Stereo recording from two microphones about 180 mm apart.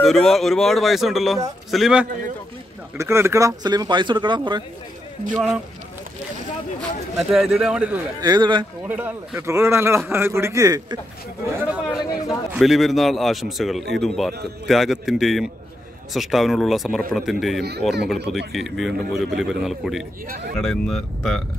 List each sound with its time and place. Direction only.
0.0 s a man's voice: centre (ahead or behind)
3.0 s speech: 15° right (ahead or behind)
7.2 s a man's voice: centre (ahead or behind)
8.2 s speech: 25° right (ahead or behind)
8.8 s a man's voice: 10° right (ahead or behind)